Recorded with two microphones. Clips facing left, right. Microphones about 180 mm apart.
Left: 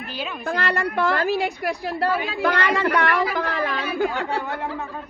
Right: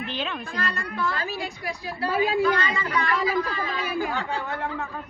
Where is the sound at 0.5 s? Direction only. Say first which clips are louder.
Left 7 dB; 65° left (ahead or behind).